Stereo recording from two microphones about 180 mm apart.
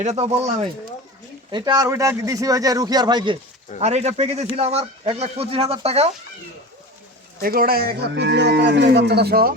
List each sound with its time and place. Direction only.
0.0 s speech: 40° right (ahead or behind)
1.5 s speech: 25° right (ahead or behind)
3.8 s speech: 35° right (ahead or behind)
7.4 s speech: 55° right (ahead or behind)